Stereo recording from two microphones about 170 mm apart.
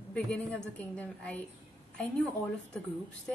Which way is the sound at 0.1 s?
10° left (ahead or behind).